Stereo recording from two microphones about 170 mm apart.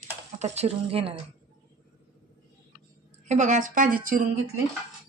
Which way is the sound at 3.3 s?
45° right (ahead or behind).